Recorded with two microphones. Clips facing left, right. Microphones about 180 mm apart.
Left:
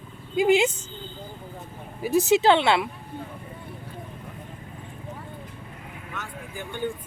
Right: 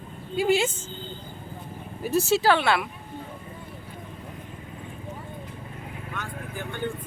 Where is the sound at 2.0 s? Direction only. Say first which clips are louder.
Left 3 dB; 15° left (ahead or behind).